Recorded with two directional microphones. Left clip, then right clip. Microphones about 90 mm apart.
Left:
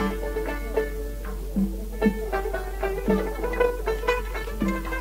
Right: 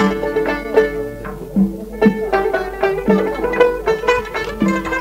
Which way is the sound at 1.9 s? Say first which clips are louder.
Right 11 dB; 35° right (ahead or behind).